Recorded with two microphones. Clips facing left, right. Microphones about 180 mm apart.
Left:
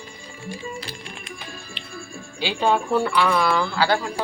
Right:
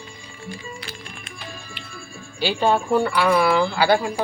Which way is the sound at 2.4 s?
Centre (ahead or behind).